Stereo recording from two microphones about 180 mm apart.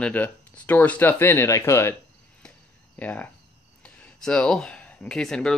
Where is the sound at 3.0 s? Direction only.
10° left (ahead or behind).